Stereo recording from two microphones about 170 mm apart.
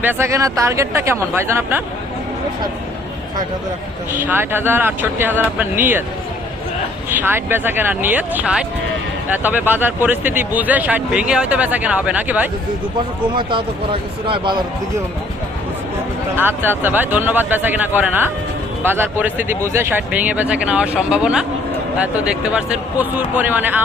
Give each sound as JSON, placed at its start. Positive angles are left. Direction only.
{"t": 0.0, "sound": "speech", "side_deg": -15}
{"t": 4.1, "sound": "speech", "side_deg": -10}
{"t": 7.1, "sound": "speech", "side_deg": -10}
{"t": 13.3, "sound": "speech", "side_deg": -30}
{"t": 16.4, "sound": "speech", "side_deg": -10}